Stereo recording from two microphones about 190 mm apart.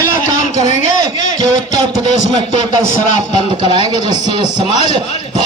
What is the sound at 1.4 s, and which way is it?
Speech, 20° right (ahead or behind).